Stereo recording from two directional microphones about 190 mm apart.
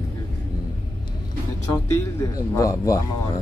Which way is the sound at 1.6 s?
15° left (ahead or behind).